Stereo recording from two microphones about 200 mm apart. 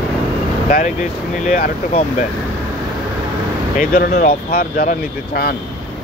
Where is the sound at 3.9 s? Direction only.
50° left (ahead or behind).